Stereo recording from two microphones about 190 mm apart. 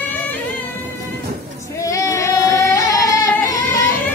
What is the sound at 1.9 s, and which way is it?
Singing, 15° left (ahead or behind).